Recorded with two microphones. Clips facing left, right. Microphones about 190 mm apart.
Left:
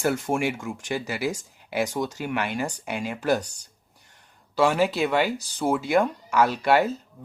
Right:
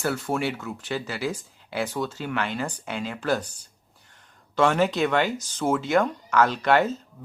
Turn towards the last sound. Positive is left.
turn(degrees=10)  # may be behind; listen again after turning